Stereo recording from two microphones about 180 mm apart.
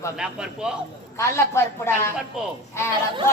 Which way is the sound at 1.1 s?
15° left (ahead or behind).